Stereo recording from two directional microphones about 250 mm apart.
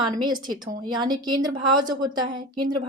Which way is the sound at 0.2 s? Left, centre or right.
Centre.